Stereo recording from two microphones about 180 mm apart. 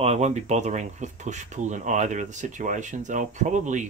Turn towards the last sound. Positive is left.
turn(degrees=-45)  # may be behind; listen again after turning